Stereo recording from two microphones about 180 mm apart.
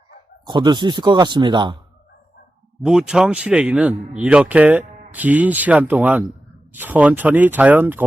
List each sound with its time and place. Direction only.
0.4 s speech: 25° right (ahead or behind)
2.8 s speech: 5° right (ahead or behind)